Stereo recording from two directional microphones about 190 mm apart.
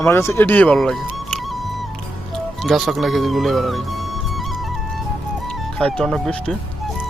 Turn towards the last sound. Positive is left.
turn(degrees=5)  # may be behind; listen again after turning